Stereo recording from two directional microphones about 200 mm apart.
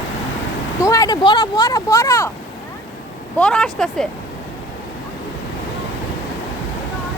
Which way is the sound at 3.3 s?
5° left (ahead or behind).